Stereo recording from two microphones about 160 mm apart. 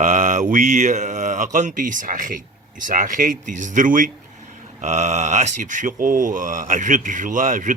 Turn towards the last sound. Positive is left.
turn(degrees=-55)  # may be behind; listen again after turning